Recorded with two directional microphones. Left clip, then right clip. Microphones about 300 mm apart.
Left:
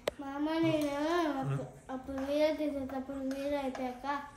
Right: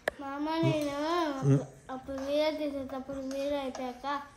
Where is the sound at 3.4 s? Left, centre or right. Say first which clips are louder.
Right 3 dB; centre.